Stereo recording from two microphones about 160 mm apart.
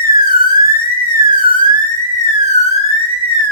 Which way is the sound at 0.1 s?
65° left (ahead or behind).